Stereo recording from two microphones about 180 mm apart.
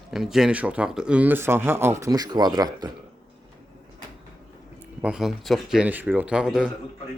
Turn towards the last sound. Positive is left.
turn(degrees=-5)  # may be behind; listen again after turning